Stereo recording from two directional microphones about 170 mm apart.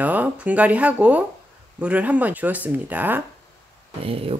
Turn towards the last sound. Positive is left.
turn(degrees=-35)  # may be behind; listen again after turning